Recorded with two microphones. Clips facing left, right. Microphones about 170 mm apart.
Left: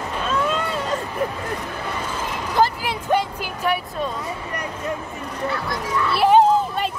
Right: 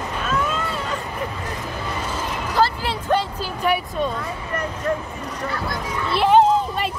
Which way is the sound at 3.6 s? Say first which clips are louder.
Right 2 dB; centre (ahead or behind).